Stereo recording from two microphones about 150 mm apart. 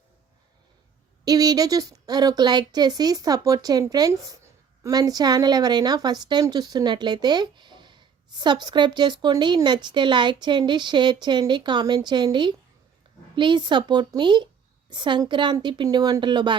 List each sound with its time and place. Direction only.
1.2 s a woman's voice: 25° right (ahead or behind)